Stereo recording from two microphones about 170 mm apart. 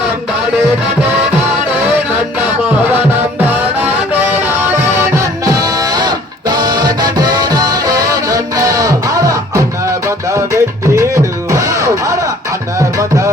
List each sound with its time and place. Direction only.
4.9 s music: 15° right (ahead or behind)